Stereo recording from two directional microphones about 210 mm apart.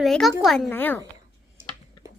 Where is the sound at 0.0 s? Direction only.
Centre (ahead or behind).